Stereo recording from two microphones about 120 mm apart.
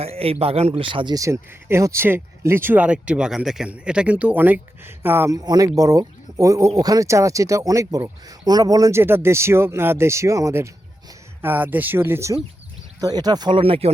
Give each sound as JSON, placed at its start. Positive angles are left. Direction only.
{"t": 0.0, "sound": "speech", "side_deg": -55}
{"t": 1.1, "sound": "speech", "side_deg": -25}
{"t": 5.4, "sound": "speech", "side_deg": -30}
{"t": 13.0, "sound": "speech", "side_deg": -35}
{"t": 13.6, "sound": "speech", "side_deg": -50}